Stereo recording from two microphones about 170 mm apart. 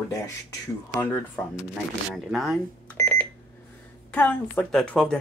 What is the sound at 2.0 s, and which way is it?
Speech, centre (ahead or behind).